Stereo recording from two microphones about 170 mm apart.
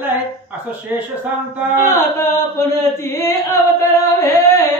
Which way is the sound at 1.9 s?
15° left (ahead or behind).